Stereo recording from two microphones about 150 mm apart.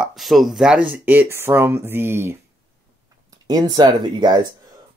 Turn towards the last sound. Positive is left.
turn(degrees=-30)  # may be behind; listen again after turning